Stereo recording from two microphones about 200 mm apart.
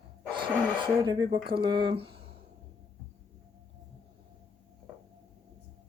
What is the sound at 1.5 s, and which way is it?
Speech, 25° right (ahead or behind).